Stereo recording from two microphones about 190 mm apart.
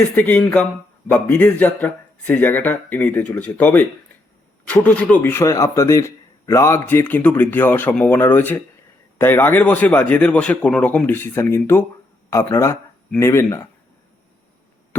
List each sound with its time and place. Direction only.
0.2 s speech: 5° left (ahead or behind)